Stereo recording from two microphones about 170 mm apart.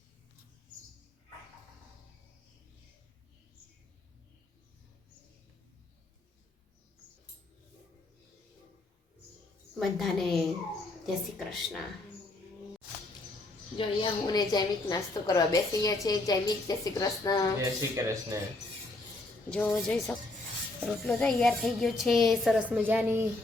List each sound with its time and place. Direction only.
9.7 s a woman's voice: centre (ahead or behind)
13.7 s a woman's voice: 25° left (ahead or behind)
17.6 s speech: 20° right (ahead or behind)
19.5 s a woman's voice: 5° left (ahead or behind); by 23.2 s 10° right (ahead or behind)